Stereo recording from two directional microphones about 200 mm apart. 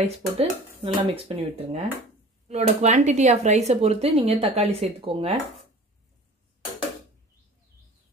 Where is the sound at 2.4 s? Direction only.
35° right (ahead or behind).